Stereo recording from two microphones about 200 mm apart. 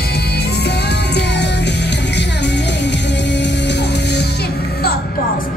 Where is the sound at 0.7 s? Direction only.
55° left (ahead or behind).